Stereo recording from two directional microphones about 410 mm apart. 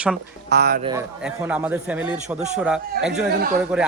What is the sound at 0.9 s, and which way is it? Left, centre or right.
A man's voice, centre.